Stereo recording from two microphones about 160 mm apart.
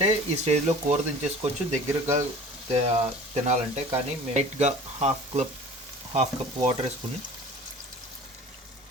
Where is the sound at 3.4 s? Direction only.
45° right (ahead or behind).